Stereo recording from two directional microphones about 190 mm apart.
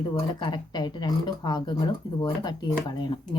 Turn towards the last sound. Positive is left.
turn(degrees=25)  # may be behind; listen again after turning